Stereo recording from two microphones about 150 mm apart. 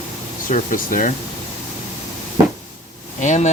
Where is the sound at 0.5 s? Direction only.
65° left (ahead or behind).